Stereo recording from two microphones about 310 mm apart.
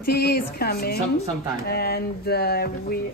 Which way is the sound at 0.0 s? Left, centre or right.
Left.